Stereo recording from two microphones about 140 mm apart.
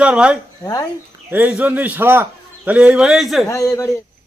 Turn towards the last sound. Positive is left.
turn(degrees=20)  # may be behind; listen again after turning